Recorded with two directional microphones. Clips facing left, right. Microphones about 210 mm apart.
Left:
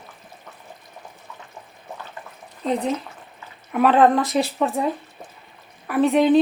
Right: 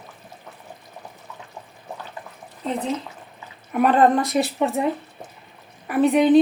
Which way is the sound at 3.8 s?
5° left (ahead or behind).